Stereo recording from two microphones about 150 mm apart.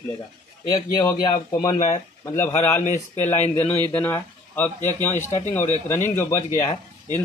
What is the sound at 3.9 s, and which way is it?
Speech, 10° left (ahead or behind).